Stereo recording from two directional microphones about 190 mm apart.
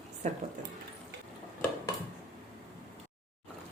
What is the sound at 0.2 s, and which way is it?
Speech, 40° right (ahead or behind).